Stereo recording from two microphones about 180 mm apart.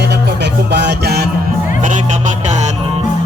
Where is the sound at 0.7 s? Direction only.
70° right (ahead or behind).